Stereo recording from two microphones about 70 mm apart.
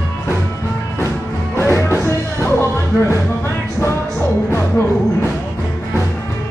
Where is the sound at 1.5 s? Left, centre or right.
Left.